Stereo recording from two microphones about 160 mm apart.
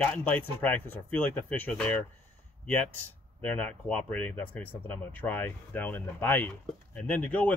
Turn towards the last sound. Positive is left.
turn(degrees=10)  # may be behind; listen again after turning